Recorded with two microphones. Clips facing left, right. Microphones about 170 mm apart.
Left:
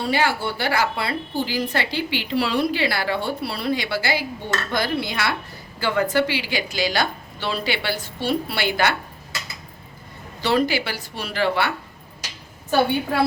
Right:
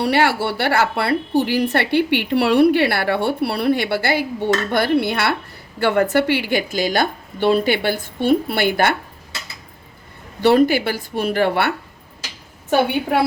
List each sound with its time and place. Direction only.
0.0 s a woman's voice: 70° right (ahead or behind); by 9.0 s 55° right (ahead or behind)
10.4 s a woman's voice: 55° right (ahead or behind)